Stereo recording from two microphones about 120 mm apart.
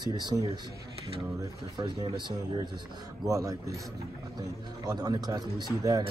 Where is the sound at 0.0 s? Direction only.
35° right (ahead or behind).